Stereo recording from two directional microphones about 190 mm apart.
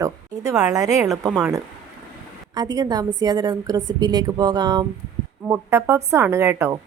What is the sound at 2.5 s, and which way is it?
A woman's voice, 20° right (ahead or behind).